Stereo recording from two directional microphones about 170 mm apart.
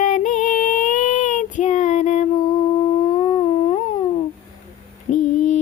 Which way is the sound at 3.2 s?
30° left (ahead or behind).